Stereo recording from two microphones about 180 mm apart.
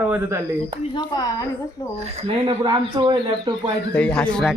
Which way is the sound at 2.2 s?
35° right (ahead or behind).